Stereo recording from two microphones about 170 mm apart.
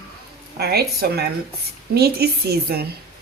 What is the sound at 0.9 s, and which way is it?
A woman's voice, 70° right (ahead or behind).